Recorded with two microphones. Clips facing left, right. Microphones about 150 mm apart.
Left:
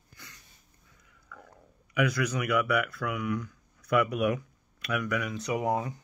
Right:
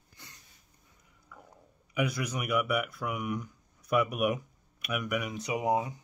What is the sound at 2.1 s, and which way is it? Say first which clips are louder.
Speech: left 3 dB; 20° right (ahead or behind).